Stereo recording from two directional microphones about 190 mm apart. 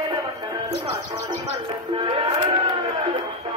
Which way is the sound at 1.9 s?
30° right (ahead or behind).